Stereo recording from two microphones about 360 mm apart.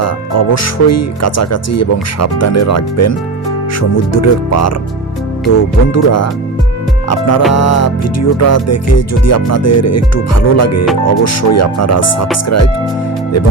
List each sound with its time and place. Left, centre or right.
0.0 s music: left
5.9 s music: left